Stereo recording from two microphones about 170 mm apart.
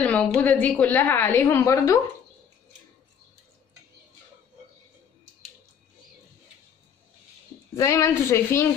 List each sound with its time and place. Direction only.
0.0 s a woman's voice: 5° left (ahead or behind)
7.7 s a woman's voice: 20° left (ahead or behind)